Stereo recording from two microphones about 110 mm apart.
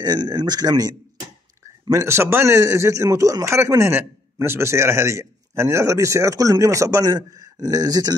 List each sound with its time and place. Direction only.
0.0 s speech: 40° right (ahead or behind)
1.9 s a man's voice: 25° right (ahead or behind)